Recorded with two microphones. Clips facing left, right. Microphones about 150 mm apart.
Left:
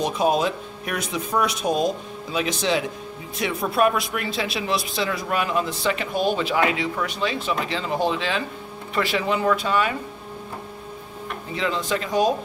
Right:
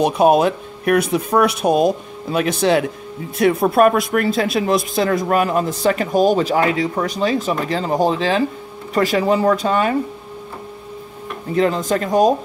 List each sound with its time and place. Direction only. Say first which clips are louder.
0.0 s speech: right 7 dB; 60° right (ahead or behind); by 9.9 s 40° right (ahead or behind)
11.5 s speech: right 8 dB; 45° right (ahead or behind)